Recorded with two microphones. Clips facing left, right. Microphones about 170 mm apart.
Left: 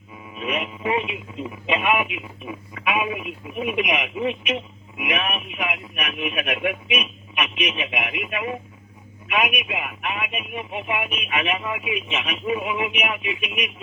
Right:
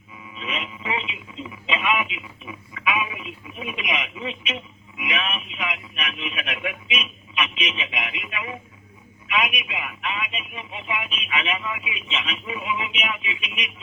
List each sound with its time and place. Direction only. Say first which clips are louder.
0.3 s speech: left 6 dB; 60° left (ahead or behind)